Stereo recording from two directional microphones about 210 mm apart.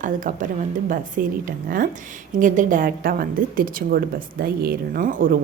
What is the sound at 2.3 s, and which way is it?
A woman's voice, 35° right (ahead or behind).